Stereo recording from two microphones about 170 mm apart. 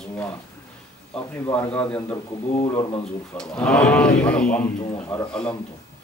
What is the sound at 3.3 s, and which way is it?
A man's voice, 5° left (ahead or behind).